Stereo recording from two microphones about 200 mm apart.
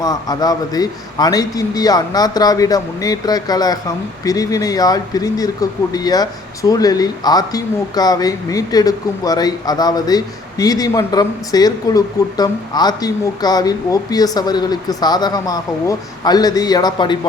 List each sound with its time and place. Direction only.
0.0 s speech: 20° left (ahead or behind)